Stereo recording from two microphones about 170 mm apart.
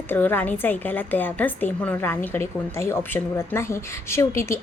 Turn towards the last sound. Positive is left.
turn(degrees=15)  # may be behind; listen again after turning